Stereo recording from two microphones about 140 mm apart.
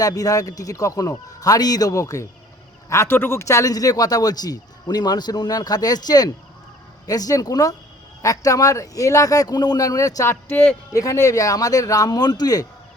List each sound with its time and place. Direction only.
0.0 s speech: 25° left (ahead or behind)